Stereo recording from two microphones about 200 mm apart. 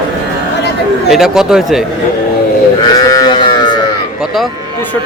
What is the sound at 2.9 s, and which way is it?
Sheep, 20° left (ahead or behind).